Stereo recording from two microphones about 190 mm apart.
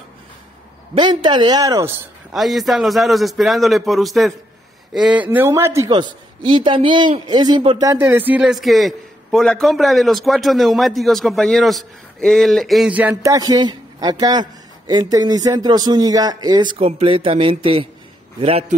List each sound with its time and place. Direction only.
0.9 s speech: 25° right (ahead or behind)
2.3 s a man's voice: centre (ahead or behind); by 18.8 s 35° right (ahead or behind)